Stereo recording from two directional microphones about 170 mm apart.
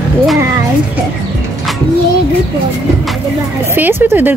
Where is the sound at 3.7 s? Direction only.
10° right (ahead or behind).